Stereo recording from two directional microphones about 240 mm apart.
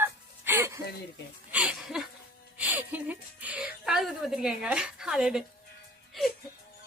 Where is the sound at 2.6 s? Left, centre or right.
Centre.